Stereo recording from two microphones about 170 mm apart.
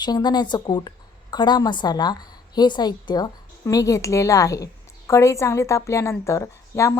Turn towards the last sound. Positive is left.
turn(degrees=15)  # may be behind; listen again after turning